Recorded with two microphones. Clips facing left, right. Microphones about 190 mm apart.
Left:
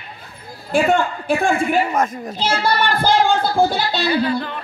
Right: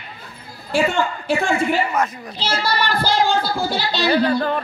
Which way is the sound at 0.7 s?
55° left (ahead or behind).